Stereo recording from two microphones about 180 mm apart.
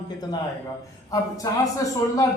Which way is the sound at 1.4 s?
20° left (ahead or behind).